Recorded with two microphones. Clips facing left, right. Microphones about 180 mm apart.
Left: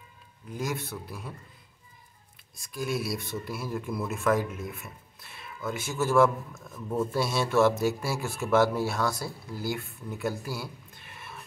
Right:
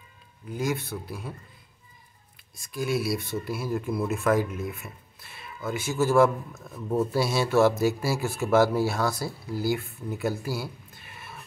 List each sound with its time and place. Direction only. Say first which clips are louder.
0.5 s speech: right 4 dB; centre (ahead or behind)
2.5 s speech: right 3 dB; centre (ahead or behind)
6.7 s speech: right 3 dB; 20° right (ahead or behind)
7.1 s speech: right 3 dB; 5° right (ahead or behind)